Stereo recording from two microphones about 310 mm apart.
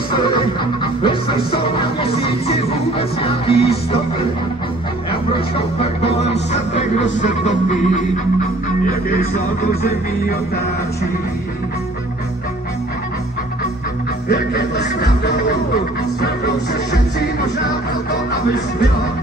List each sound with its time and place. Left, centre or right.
1.0 s music: centre
5.8 s music: centre
14.3 s music: left